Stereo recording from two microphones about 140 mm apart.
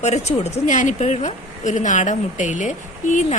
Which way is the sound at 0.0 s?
50° left (ahead or behind).